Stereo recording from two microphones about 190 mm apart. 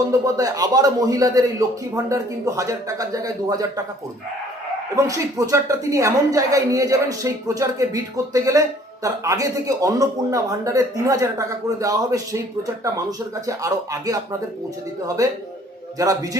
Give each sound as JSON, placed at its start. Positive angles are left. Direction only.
{"t": 0.1, "sound": "a man's voice", "side_deg": -15}
{"t": 4.9, "sound": "a woman's voice", "side_deg": -15}
{"t": 13.6, "sound": "a woman's voice", "side_deg": -15}